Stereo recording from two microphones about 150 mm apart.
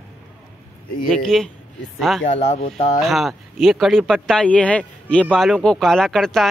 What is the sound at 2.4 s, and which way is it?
Speech, 45° left (ahead or behind).